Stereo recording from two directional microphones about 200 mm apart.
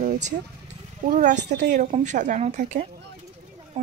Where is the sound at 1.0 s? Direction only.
40° right (ahead or behind).